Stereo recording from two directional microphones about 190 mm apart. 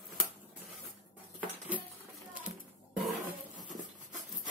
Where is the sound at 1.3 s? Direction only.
10° right (ahead or behind).